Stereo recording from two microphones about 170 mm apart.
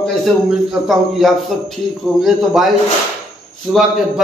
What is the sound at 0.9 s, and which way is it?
A man's voice, centre (ahead or behind).